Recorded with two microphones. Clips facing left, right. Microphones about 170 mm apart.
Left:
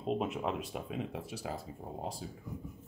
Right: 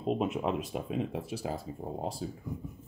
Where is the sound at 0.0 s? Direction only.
20° right (ahead or behind); by 2.4 s 35° right (ahead or behind).